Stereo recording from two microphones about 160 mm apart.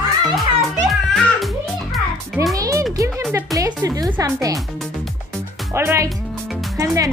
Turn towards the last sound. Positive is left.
turn(degrees=-20)  # may be behind; listen again after turning